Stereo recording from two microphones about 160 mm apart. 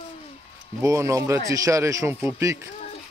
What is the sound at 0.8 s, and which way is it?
Speech, 20° right (ahead or behind).